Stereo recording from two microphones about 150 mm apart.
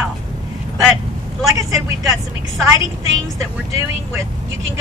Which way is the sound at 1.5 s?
20° right (ahead or behind).